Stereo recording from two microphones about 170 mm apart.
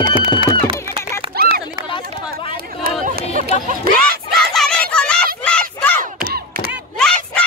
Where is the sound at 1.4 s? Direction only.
60° right (ahead or behind).